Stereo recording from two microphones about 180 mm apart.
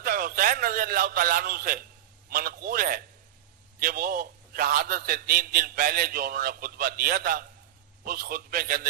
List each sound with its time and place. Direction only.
0.0 s a man's voice: 55° right (ahead or behind)